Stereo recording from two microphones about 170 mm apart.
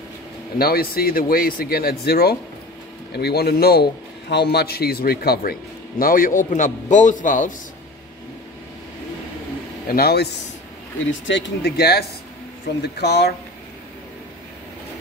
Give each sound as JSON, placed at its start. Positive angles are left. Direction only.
{"t": 0.6, "sound": "a man's voice", "side_deg": 60}
{"t": 9.8, "sound": "a man's voice", "side_deg": 65}
{"t": 11.1, "sound": "speech", "side_deg": 90}